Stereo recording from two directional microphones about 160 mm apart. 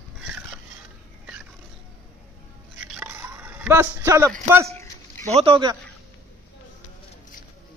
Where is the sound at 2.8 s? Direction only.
5° right (ahead or behind).